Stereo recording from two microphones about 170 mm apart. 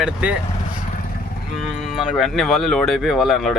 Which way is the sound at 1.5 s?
5° right (ahead or behind).